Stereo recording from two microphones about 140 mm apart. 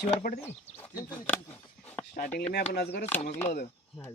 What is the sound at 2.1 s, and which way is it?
Speech, 85° left.